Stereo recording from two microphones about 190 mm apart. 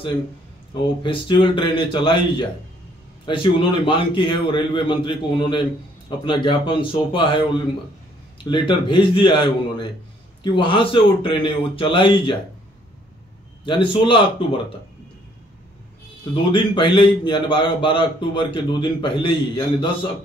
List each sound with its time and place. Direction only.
1.0 s a man's voice: 25° left (ahead or behind)
13.7 s a man's voice: 25° left (ahead or behind)
16.5 s a man's voice: 25° left (ahead or behind)